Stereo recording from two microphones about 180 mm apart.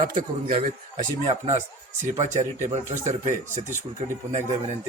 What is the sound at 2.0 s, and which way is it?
Speech, 40° right (ahead or behind).